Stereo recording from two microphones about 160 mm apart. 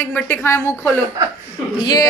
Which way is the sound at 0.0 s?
15° left (ahead or behind).